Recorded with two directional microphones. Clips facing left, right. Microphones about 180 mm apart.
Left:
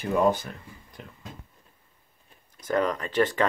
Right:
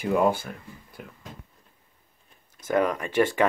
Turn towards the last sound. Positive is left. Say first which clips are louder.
# right 1 dB
turn(degrees=-10)  # may be behind; listen again after turning